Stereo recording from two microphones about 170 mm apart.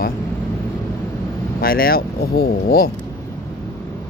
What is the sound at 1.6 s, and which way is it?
Speech, 60° left (ahead or behind).